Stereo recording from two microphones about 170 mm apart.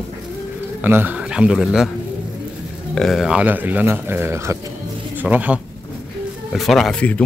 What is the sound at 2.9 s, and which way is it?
Speech, centre (ahead or behind).